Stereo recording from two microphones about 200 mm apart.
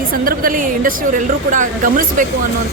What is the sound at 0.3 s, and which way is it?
A woman's voice, 45° right (ahead or behind).